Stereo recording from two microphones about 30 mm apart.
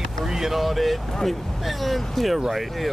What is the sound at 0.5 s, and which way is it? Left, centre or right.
Speech, centre.